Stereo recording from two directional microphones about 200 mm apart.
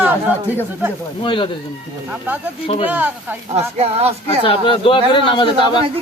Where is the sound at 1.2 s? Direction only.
25° left (ahead or behind).